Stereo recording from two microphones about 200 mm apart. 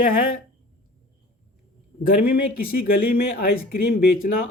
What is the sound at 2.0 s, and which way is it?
Speech, 45° left (ahead or behind).